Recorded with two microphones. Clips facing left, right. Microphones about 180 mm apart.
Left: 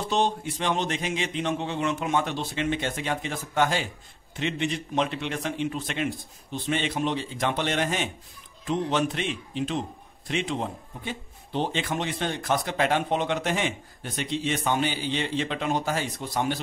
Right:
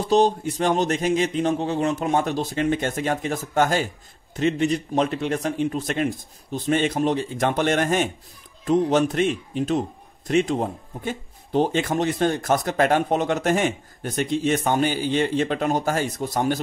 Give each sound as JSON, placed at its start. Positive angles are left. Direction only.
{"t": 0.1, "sound": "a man's voice", "side_deg": -40}